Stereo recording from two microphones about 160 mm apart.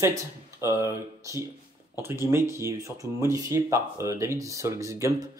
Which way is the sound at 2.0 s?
15° right (ahead or behind).